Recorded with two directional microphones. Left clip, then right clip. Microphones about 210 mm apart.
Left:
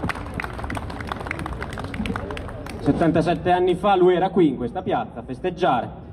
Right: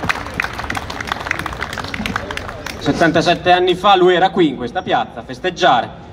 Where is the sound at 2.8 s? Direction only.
15° left (ahead or behind).